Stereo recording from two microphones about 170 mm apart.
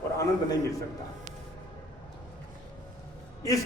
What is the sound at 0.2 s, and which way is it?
Speech, 20° left (ahead or behind).